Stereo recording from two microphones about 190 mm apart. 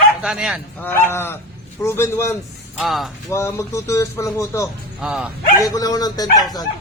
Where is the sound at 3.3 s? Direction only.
15° left (ahead or behind).